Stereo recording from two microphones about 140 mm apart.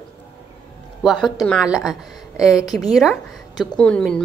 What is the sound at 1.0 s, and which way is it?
Speech, centre (ahead or behind).